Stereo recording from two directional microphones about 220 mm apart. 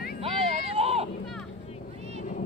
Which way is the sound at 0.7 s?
25° right (ahead or behind).